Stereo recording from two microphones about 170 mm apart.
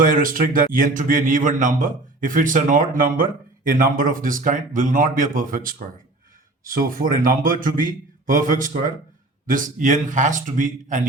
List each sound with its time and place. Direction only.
0.0 s a man's voice: 55° right (ahead or behind)